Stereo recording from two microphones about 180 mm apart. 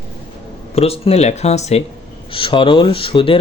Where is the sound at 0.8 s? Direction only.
35° left (ahead or behind).